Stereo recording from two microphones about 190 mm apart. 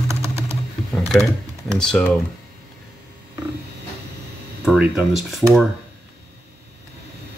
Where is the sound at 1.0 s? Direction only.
Centre (ahead or behind).